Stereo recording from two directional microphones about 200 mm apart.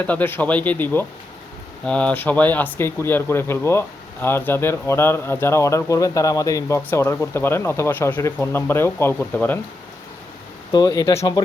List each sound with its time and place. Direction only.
0.0 s speech: 10° left (ahead or behind)
10.7 s speech: 20° left (ahead or behind)